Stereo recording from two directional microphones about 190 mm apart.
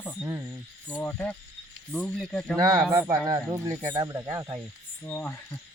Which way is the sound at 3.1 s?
15° right (ahead or behind).